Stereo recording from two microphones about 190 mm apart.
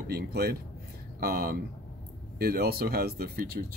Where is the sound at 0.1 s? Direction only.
55° right (ahead or behind).